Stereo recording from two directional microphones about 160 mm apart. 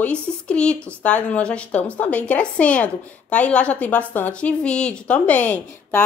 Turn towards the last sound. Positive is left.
turn(degrees=10)  # may be behind; listen again after turning